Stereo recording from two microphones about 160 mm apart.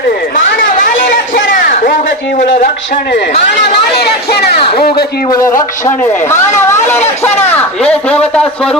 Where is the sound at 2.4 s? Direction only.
50° left (ahead or behind).